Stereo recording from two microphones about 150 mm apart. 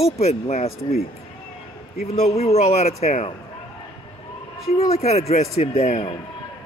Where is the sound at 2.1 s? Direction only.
45° left (ahead or behind).